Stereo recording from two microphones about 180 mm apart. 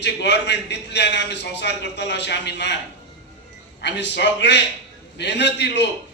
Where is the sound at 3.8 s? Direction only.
75° left (ahead or behind).